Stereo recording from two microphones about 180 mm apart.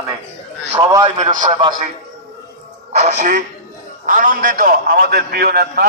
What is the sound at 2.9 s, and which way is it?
A man's voice, 40° right (ahead or behind).